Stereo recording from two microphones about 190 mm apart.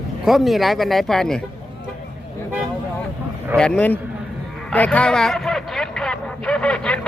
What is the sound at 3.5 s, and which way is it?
Speech, 5° left (ahead or behind).